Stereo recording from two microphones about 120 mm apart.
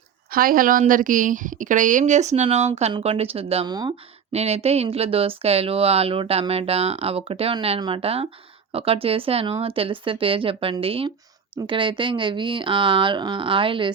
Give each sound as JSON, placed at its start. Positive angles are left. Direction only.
{"t": 1.0, "sound": "speech", "side_deg": -90}
{"t": 3.7, "sound": "speech", "side_deg": -35}
{"t": 4.3, "sound": "speech", "side_deg": -60}